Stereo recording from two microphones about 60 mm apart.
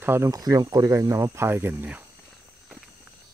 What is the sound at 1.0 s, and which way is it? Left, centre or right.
Speech, right.